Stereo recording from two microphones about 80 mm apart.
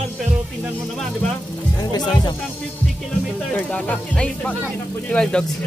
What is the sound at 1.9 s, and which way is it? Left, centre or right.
Speech, left.